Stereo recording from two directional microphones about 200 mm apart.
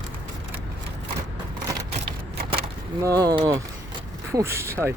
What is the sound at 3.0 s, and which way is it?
Speech, 15° right (ahead or behind).